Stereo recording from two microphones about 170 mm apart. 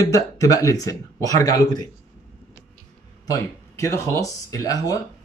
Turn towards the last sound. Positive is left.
turn(degrees=20)  # may be behind; listen again after turning